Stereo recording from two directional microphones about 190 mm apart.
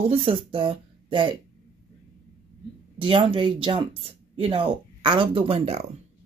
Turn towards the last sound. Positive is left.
turn(degrees=-35)  # may be behind; listen again after turning